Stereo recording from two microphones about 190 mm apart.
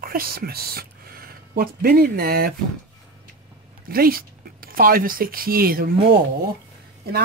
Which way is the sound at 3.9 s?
50° right (ahead or behind).